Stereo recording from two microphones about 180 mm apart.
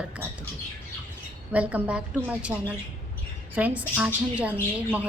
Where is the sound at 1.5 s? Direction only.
5° right (ahead or behind).